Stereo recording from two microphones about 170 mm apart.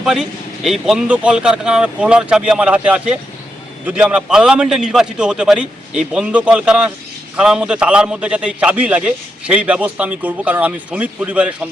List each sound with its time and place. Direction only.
0.0 s a man's voice: 5° right (ahead or behind)